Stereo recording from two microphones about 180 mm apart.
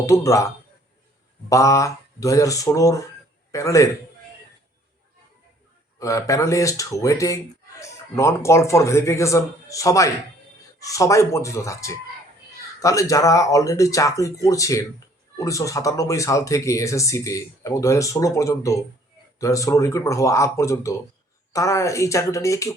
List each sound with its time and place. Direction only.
0.0 s speech: 15° left (ahead or behind)
6.0 s speech: 15° left (ahead or behind)